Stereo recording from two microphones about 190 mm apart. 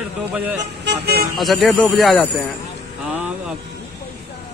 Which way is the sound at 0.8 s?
60° right (ahead or behind).